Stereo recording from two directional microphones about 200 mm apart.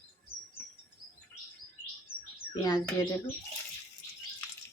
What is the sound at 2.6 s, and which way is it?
Speech, 20° left (ahead or behind).